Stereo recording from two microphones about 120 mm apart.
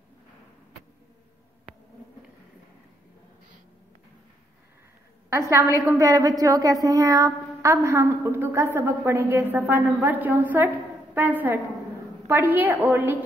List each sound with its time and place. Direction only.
5.3 s a woman's voice: 25° right (ahead or behind)